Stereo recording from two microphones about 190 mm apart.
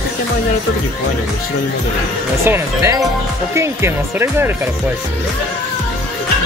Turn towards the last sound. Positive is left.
turn(degrees=-15)  # may be behind; listen again after turning